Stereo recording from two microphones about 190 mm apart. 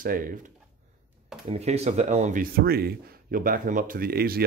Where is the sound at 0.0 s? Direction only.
50° right (ahead or behind).